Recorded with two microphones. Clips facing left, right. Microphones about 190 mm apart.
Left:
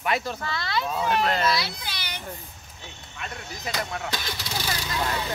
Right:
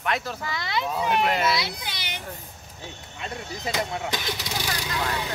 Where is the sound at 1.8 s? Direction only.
20° right (ahead or behind).